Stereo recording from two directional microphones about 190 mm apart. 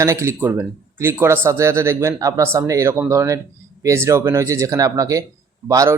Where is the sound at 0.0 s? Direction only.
15° right (ahead or behind).